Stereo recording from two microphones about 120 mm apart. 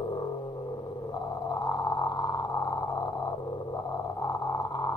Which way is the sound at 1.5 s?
30° left (ahead or behind).